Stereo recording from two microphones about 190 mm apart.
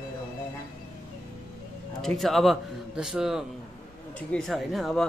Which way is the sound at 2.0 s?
Centre (ahead or behind).